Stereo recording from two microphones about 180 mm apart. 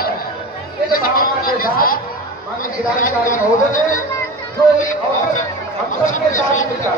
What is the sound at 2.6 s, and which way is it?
Speech, 50° left (ahead or behind).